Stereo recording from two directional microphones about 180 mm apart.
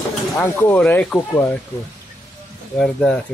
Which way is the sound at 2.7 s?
5° left (ahead or behind).